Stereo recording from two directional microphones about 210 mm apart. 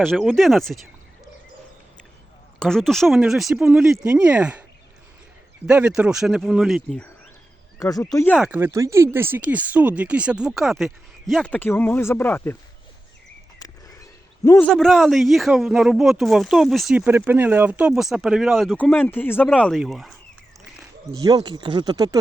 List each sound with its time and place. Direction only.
0.0 s speech: centre (ahead or behind)
2.6 s speech: centre (ahead or behind)
5.6 s speech: 5° right (ahead or behind)
7.8 s speech: 15° left (ahead or behind)
8.4 s speech: 10° right (ahead or behind); by 12.5 s 10° left (ahead or behind)
13.6 s a sound: 15° left (ahead or behind)
14.7 s speech: centre (ahead or behind)
21.1 s speech: 15° right (ahead or behind)